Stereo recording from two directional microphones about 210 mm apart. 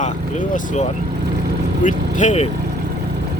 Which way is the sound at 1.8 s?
35° left (ahead or behind).